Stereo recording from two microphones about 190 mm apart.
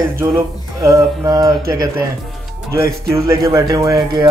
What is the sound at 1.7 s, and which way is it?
Music, 20° right (ahead or behind).